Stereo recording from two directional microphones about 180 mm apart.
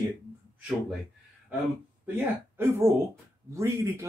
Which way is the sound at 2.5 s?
15° right (ahead or behind).